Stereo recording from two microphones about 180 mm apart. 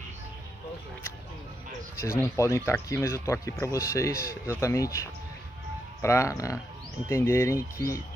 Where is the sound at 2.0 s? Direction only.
15° left (ahead or behind).